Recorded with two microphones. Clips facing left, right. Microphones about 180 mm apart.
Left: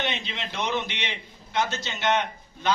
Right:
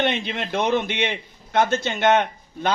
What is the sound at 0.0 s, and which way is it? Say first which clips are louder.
A man's voice: right 8 dB; 55° right (ahead or behind).